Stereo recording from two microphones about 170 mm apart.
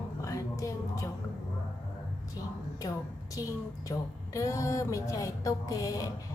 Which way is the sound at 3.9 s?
20° left (ahead or behind).